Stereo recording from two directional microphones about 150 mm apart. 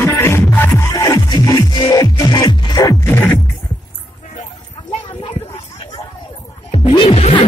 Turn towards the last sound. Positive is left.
turn(degrees=45)  # may be behind; listen again after turning